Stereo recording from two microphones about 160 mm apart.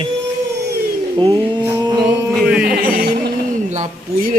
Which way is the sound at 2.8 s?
70° right (ahead or behind).